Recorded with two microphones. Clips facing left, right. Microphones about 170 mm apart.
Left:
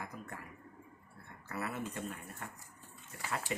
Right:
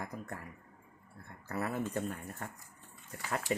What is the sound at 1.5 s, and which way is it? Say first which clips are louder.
Speech: right 4 dB; 40° right (ahead or behind).